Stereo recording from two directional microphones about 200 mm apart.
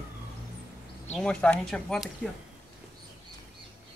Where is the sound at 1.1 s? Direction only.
5° left (ahead or behind).